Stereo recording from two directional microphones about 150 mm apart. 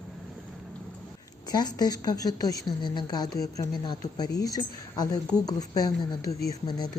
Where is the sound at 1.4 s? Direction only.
25° left (ahead or behind).